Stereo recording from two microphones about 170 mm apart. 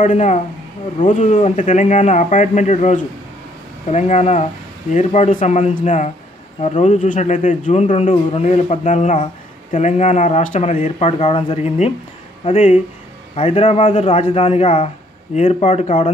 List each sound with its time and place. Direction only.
0.0 s a man's voice: 45° left (ahead or behind)